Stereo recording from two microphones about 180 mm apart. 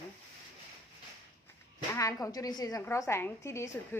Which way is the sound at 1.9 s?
20° left (ahead or behind).